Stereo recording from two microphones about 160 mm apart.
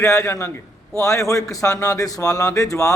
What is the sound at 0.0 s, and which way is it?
A man's voice, 20° left (ahead or behind).